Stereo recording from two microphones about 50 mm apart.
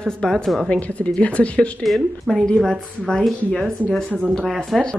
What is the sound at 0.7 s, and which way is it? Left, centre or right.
Speech, left.